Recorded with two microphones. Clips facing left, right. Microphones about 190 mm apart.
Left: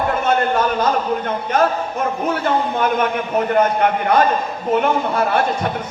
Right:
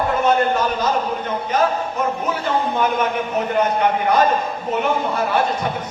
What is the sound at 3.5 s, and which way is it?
A man's voice, 50° left (ahead or behind).